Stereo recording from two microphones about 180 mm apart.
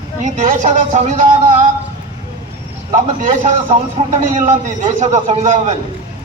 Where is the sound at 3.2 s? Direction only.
40° right (ahead or behind).